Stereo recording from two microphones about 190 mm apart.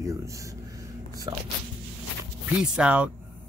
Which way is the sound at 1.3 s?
20° right (ahead or behind).